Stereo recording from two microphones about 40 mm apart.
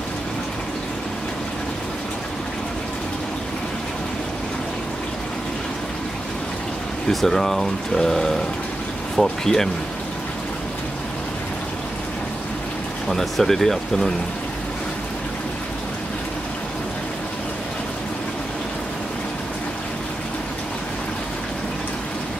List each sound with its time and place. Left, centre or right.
7.1 s speech: centre
13.1 s speech: centre